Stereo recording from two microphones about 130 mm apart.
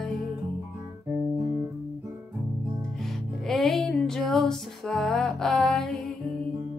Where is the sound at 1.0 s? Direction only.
10° right (ahead or behind).